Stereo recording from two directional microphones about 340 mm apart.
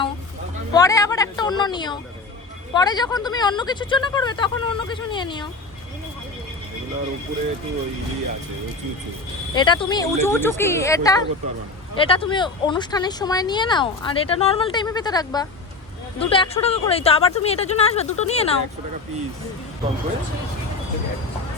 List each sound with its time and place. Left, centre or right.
0.7 s speech: centre
9.6 s speech: centre